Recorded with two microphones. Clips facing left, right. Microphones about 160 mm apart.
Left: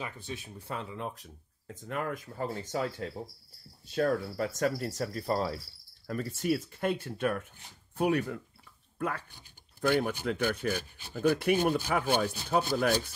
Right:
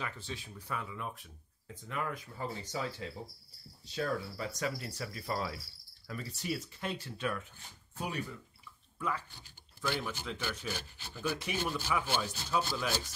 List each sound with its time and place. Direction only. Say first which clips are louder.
0.5 s speech: left 1 dB; 25° left (ahead or behind)
0.9 s speech: left 4 dB; 35° left (ahead or behind)
6.0 s speech: left 8 dB; 50° left (ahead or behind)
8.0 s speech: left 11 dB; 65° left (ahead or behind)